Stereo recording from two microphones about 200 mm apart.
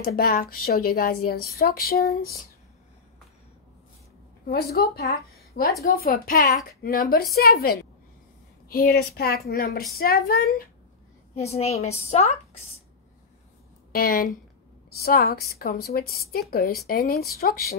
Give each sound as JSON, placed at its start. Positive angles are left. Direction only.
{"t": 0.0, "sound": "a woman's voice", "side_deg": 50}
{"t": 4.5, "sound": "a woman's voice", "side_deg": 50}
{"t": 11.5, "sound": "a woman's voice", "side_deg": 30}
{"t": 13.9, "sound": "a woman's voice", "side_deg": 45}